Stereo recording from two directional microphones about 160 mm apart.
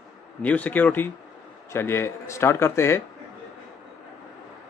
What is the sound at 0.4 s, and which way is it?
Speech, 10° left (ahead or behind).